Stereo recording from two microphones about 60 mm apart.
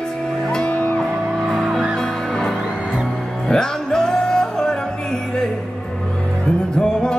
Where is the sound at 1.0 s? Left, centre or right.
Centre.